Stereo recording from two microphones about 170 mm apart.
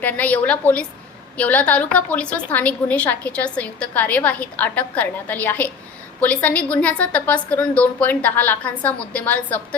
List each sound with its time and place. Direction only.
0.0 s a woman's voice: 10° left (ahead or behind)